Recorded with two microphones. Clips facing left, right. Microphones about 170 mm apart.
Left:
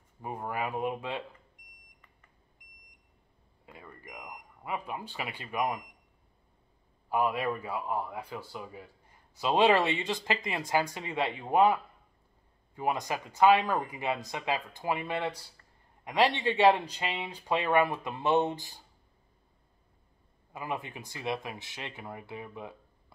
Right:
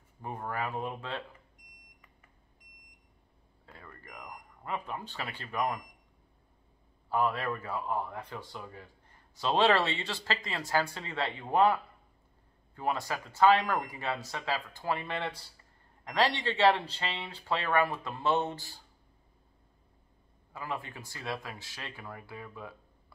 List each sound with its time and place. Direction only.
0.2 s speech: 10° left (ahead or behind)
3.6 s speech: 15° left (ahead or behind)
7.1 s speech: 15° left (ahead or behind)
20.5 s speech: 20° left (ahead or behind)